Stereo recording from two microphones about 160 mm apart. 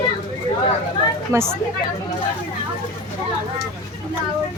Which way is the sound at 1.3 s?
15° right (ahead or behind).